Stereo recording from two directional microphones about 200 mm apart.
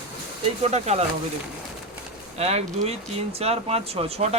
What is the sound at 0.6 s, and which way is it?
Speech, 35° right (ahead or behind).